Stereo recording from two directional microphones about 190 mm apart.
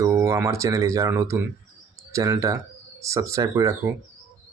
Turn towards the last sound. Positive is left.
turn(degrees=-15)  # may be behind; listen again after turning